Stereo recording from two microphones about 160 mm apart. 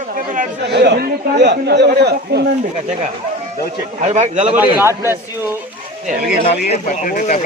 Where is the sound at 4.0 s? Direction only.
45° right (ahead or behind).